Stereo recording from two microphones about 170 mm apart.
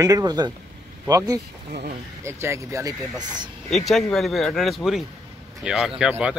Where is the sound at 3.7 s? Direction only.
Centre (ahead or behind).